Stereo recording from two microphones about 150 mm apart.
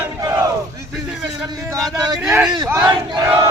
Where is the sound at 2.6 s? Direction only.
15° right (ahead or behind).